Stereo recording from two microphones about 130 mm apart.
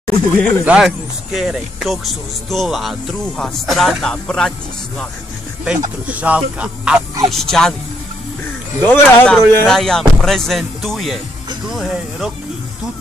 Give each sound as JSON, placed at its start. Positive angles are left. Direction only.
{"t": 0.0, "sound": "speech", "side_deg": 10}
{"t": 0.7, "sound": "speech", "side_deg": -5}
{"t": 6.0, "sound": "speech", "side_deg": -10}
{"t": 7.2, "sound": "speech", "side_deg": 5}
{"t": 8.8, "sound": "speech", "side_deg": 15}
{"t": 9.7, "sound": "speech", "side_deg": 5}